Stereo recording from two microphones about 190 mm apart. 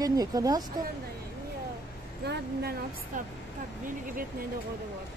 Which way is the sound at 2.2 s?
60° right (ahead or behind).